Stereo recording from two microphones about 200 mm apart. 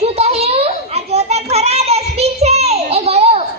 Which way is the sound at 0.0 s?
30° right (ahead or behind).